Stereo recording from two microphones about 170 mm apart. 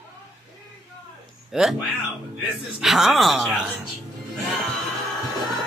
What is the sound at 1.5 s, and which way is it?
Speech, centre (ahead or behind).